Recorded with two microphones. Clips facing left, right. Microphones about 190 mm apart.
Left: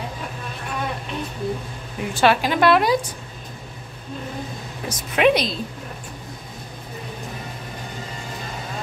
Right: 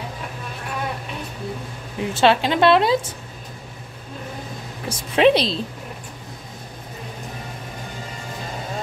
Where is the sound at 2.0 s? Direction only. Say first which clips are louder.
Right 1 dB; 25° right (ahead or behind).